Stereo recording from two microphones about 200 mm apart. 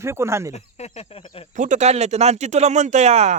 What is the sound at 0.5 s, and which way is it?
Speech, 30° left (ahead or behind).